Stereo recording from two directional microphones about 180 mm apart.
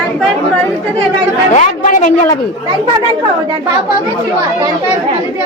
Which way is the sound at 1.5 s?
45° left (ahead or behind).